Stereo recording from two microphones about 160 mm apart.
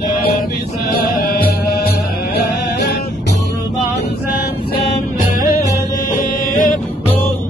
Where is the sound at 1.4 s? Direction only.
75° left (ahead or behind).